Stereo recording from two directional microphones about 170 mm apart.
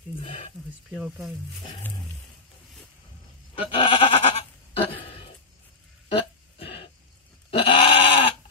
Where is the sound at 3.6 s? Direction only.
35° left (ahead or behind).